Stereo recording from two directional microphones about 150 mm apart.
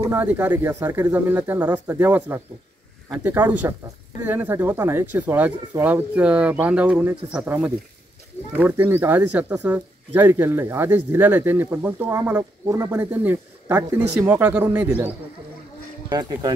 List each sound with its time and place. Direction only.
0.0 s speech: 15° right (ahead or behind)
16.1 s speech: 25° right (ahead or behind)